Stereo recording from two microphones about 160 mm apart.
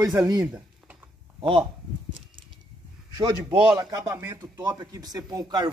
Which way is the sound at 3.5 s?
10° right (ahead or behind).